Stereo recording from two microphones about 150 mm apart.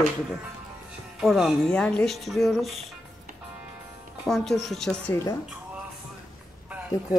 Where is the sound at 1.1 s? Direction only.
Centre (ahead or behind).